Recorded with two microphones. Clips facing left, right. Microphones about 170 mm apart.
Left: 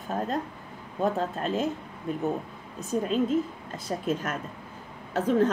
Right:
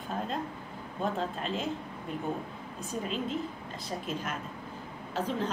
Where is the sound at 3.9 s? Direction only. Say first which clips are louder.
Left 6 dB; 55° left (ahead or behind).